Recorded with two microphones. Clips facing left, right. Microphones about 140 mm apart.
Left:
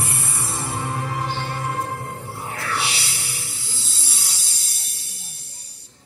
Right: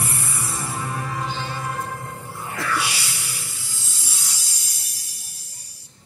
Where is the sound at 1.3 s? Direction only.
60° left (ahead or behind).